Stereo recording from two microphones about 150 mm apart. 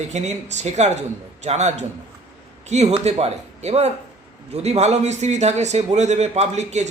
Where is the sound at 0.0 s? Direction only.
50° right (ahead or behind).